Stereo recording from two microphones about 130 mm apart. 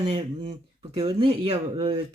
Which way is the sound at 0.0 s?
50° right (ahead or behind).